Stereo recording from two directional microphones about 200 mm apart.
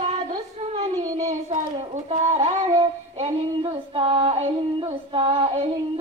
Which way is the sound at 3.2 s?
25° right (ahead or behind).